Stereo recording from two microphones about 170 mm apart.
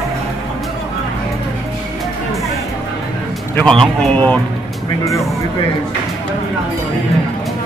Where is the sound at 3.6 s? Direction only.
5° left (ahead or behind).